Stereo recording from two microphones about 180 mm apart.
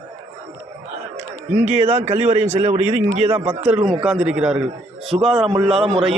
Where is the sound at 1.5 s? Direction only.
10° right (ahead or behind).